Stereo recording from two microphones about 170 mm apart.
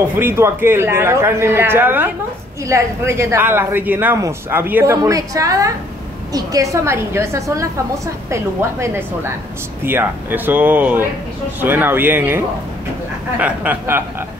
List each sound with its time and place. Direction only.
0.2 s speech: 15° right (ahead or behind)